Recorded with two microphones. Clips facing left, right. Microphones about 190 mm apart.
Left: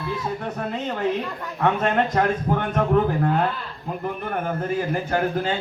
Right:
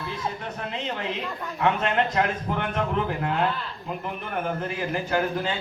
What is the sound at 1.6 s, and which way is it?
A man's voice, 45° left (ahead or behind).